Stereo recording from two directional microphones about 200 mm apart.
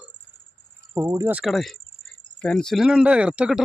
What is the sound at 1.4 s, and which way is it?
Speech, centre (ahead or behind).